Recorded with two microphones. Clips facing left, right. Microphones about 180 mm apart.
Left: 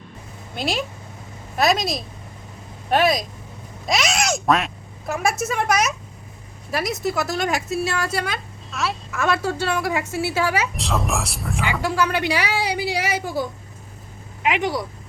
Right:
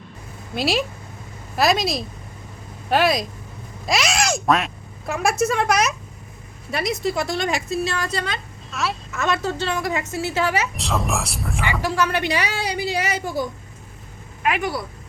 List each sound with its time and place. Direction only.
0.5 s a woman's voice: 5° right (ahead or behind)
10.8 s speech: centre (ahead or behind)
11.8 s a woman's voice: 15° left (ahead or behind)
14.4 s a woman's voice: 20° left (ahead or behind)